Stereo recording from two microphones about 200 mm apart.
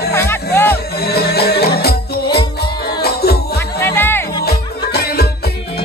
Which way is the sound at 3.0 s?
50° left (ahead or behind).